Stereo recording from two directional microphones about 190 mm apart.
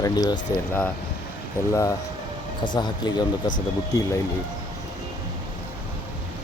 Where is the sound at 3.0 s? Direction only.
20° left (ahead or behind).